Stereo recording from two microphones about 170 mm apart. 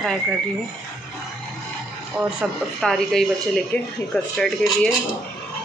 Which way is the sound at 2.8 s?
Centre (ahead or behind).